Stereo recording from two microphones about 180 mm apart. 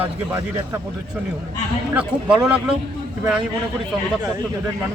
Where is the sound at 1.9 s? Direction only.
5° right (ahead or behind).